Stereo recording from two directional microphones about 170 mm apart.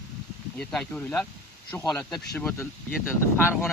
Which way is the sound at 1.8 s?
25° left (ahead or behind).